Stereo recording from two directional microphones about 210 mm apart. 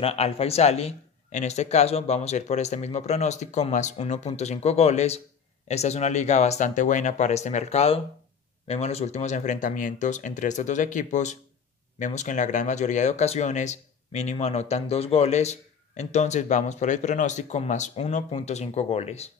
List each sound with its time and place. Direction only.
0.0 s speech: 30° left (ahead or behind)